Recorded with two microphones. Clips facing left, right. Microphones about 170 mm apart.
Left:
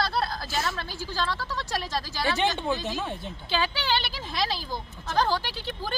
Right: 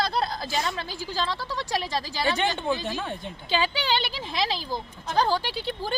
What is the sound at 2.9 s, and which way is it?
Speech, 5° left (ahead or behind).